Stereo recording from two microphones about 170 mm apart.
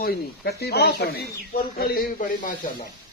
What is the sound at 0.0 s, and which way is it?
Speech, 70° left (ahead or behind).